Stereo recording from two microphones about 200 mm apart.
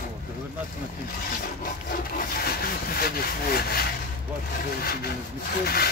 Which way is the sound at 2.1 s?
50° left (ahead or behind).